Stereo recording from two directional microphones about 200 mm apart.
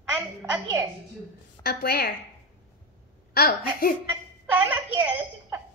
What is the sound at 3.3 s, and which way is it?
Speech, 45° left (ahead or behind).